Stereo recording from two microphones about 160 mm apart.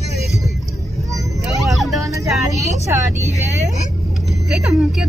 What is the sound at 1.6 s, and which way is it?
Speech, centre (ahead or behind).